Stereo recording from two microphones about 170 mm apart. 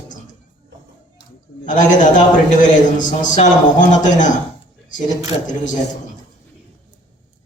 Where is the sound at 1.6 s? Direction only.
50° left (ahead or behind).